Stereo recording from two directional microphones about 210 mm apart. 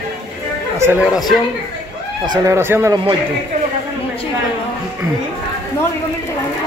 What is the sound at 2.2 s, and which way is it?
Speech, 15° right (ahead or behind).